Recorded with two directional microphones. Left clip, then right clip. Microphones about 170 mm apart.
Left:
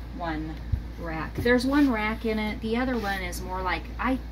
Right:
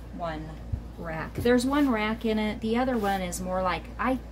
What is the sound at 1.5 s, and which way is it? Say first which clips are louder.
Speech: left 1 dB; 70° right (ahead or behind).